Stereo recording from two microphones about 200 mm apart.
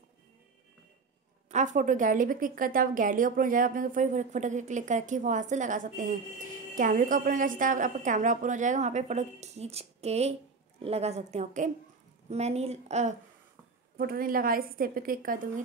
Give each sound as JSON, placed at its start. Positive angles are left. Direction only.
{"t": 1.5, "sound": "a woman's voice", "side_deg": -35}
{"t": 13.9, "sound": "a woman's voice", "side_deg": -45}